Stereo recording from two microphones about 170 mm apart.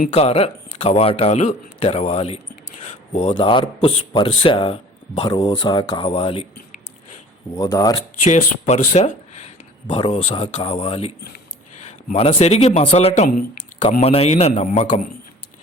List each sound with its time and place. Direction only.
0.1 s a man's voice: 35° left (ahead or behind)
3.3 s a man's voice: 25° left (ahead or behind)
7.5 s speech: 20° left (ahead or behind)
8.2 s a man's voice: 45° left (ahead or behind)